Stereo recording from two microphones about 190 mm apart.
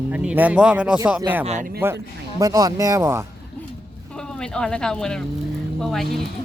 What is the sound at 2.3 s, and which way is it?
Speech, 20° right (ahead or behind).